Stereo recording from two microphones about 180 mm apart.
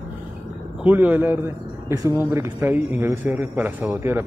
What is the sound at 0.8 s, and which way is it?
Speech, 10° right (ahead or behind).